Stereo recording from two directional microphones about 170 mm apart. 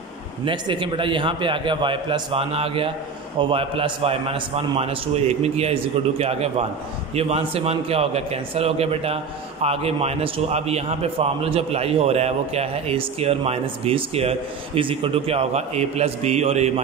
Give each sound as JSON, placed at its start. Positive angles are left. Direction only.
{"t": 0.5, "sound": "a man's voice", "side_deg": -30}